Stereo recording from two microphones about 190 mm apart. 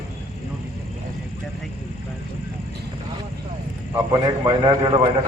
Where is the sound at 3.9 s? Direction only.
25° right (ahead or behind).